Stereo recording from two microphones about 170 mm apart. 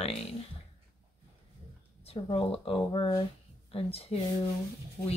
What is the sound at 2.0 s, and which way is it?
Speech, 35° left (ahead or behind).